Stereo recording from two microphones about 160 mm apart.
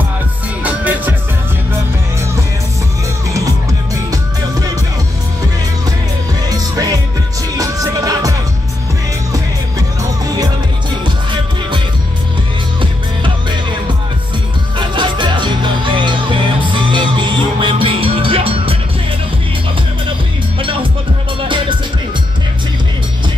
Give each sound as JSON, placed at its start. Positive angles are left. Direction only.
{"t": 0.7, "sound": "music", "side_deg": -10}
{"t": 3.3, "sound": "music", "side_deg": -20}
{"t": 6.5, "sound": "music", "side_deg": -25}
{"t": 13.2, "sound": "music", "side_deg": -30}
{"t": 20.5, "sound": "music", "side_deg": -30}